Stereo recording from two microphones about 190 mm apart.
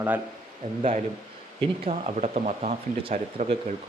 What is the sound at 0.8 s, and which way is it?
Speech, 35° right (ahead or behind).